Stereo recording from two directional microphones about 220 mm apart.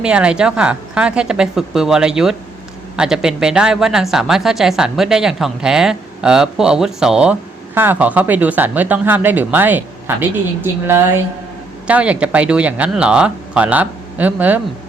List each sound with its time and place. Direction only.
0.0 s speech: 5° right (ahead or behind)